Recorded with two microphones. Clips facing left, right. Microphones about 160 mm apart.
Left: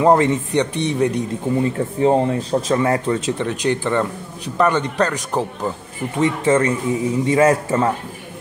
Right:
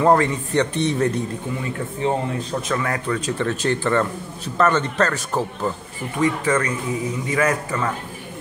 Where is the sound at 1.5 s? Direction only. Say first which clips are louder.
Left 8 dB; 35° left (ahead or behind).